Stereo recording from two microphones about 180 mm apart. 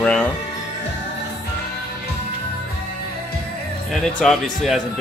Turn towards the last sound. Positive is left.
turn(degrees=0)  # may be behind; listen again after turning